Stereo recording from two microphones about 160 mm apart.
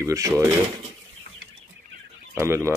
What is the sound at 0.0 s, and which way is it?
Speech, 20° right (ahead or behind).